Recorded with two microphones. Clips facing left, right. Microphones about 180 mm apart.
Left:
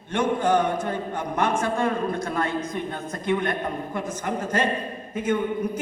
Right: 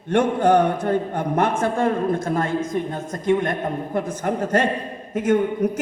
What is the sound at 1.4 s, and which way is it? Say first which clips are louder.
A man's voice: right 3 dB; 55° right (ahead or behind).